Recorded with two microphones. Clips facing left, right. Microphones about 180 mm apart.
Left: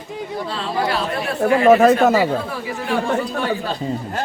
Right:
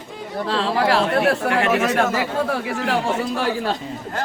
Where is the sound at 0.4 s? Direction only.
75° right (ahead or behind).